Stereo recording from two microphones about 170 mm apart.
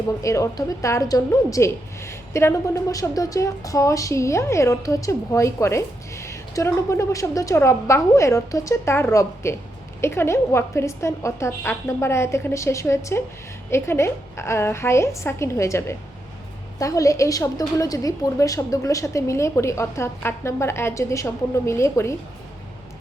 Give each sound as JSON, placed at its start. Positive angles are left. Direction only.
{"t": 0.2, "sound": "a woman's voice", "side_deg": 20}